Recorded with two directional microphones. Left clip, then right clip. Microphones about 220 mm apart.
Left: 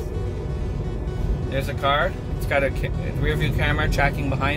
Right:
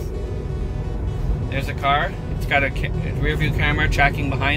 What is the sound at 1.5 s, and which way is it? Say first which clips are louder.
Speech: right 2 dB; 25° left (ahead or behind).